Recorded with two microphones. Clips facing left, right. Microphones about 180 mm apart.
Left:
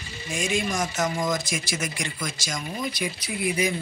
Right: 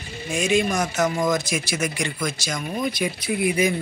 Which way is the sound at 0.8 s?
65° right (ahead or behind).